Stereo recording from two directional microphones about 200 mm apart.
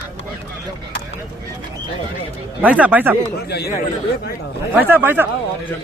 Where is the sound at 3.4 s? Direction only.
55° left (ahead or behind).